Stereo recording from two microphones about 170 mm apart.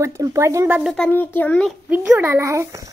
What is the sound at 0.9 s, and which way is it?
Speech, 5° left (ahead or behind).